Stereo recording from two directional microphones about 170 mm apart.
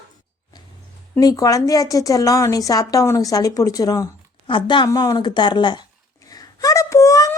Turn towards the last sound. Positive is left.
turn(degrees=20)  # may be behind; listen again after turning